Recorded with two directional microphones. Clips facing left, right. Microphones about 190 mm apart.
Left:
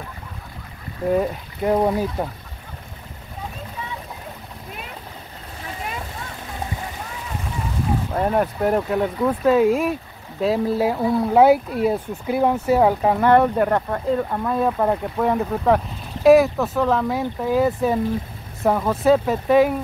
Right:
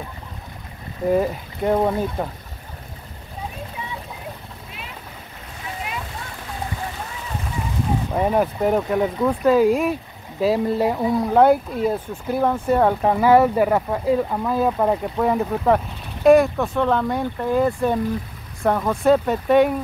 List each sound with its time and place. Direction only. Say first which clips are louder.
1.0 s speech: right 1 dB; centre (ahead or behind)
8.1 s speech: right 1 dB; 5° right (ahead or behind)